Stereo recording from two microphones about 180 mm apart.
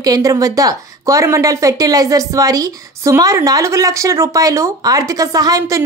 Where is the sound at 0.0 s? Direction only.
20° right (ahead or behind).